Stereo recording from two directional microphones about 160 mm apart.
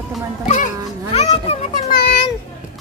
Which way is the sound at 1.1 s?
40° left (ahead or behind).